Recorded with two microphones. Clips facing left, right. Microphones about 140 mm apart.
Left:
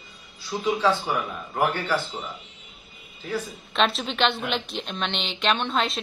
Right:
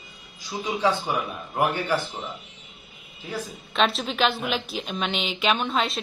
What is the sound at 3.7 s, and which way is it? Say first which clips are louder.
A woman's voice: even; centre (ahead or behind).